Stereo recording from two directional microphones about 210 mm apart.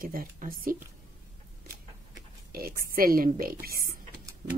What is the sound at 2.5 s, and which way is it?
Speech, 45° right (ahead or behind).